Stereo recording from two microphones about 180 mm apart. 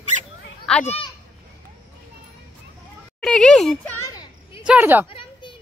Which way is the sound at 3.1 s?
5° left (ahead or behind).